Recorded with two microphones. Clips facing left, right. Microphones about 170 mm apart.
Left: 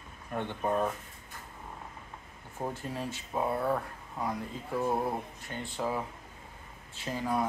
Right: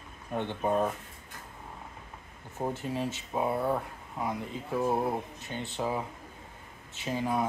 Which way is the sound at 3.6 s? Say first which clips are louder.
Right 1 dB; 5° right (ahead or behind).